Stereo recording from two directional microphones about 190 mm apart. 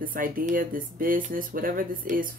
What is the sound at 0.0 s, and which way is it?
Speech, 45° right (ahead or behind).